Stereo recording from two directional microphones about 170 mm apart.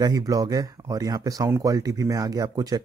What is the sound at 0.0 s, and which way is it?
Speech, 20° right (ahead or behind).